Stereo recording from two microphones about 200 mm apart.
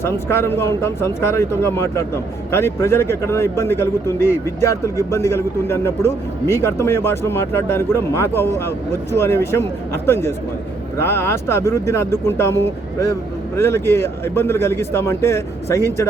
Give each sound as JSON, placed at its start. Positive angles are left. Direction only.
{"t": 0.0, "sound": "a man's voice", "side_deg": 10}